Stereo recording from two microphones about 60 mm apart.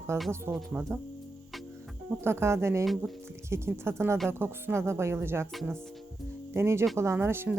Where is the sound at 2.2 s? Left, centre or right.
Right.